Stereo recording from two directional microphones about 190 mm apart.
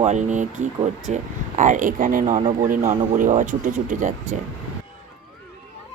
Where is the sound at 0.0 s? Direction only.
40° right (ahead or behind).